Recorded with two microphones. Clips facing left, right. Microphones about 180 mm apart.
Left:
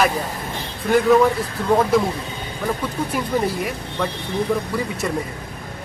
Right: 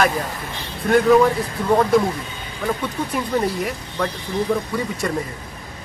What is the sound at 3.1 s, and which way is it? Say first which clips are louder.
Speech: right 1 dB; centre (ahead or behind).